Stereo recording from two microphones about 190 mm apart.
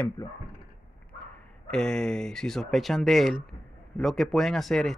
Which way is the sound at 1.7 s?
5° left (ahead or behind).